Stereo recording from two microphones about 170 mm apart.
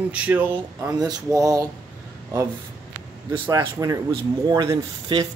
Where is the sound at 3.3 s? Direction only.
20° right (ahead or behind).